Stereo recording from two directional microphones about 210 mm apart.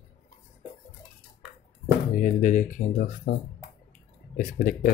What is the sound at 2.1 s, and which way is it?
Speech, 35° left (ahead or behind).